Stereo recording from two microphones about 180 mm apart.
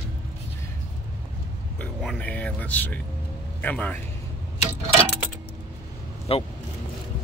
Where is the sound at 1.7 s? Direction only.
5° left (ahead or behind).